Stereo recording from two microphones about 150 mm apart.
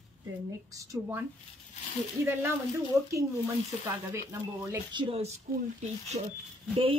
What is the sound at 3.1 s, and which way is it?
Speech, 20° right (ahead or behind).